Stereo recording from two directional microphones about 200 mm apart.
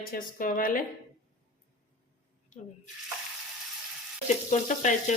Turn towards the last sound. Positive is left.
turn(degrees=35)  # may be behind; listen again after turning